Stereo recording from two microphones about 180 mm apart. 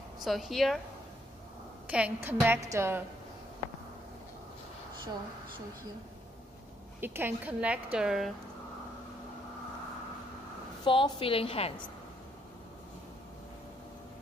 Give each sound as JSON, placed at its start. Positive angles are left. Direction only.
{"t": 0.2, "sound": "a woman's voice", "side_deg": 0}
{"t": 1.9, "sound": "a woman's voice", "side_deg": -10}
{"t": 7.0, "sound": "a woman's voice", "side_deg": -10}
{"t": 10.8, "sound": "a woman's voice", "side_deg": 30}